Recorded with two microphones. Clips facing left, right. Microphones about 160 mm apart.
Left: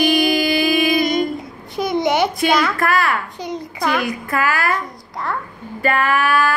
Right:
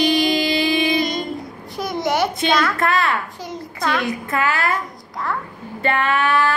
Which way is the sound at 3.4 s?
Centre (ahead or behind).